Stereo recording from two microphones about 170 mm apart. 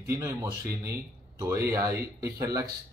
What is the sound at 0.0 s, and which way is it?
Speech, 15° right (ahead or behind).